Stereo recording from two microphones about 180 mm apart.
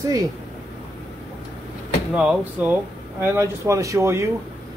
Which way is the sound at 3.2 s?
15° right (ahead or behind).